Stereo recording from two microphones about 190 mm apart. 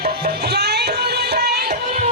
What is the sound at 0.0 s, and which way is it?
Music, 55° right (ahead or behind).